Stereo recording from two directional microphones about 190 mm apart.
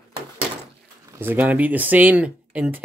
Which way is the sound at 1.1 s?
10° right (ahead or behind).